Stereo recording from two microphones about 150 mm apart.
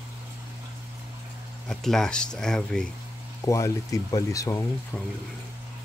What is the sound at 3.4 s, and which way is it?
Speech, 20° left (ahead or behind).